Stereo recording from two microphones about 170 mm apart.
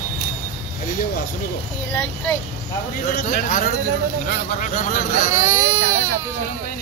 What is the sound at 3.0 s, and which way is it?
A man's voice, 50° left (ahead or behind).